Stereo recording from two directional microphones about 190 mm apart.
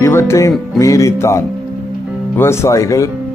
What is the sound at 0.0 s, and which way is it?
Music, 15° left (ahead or behind).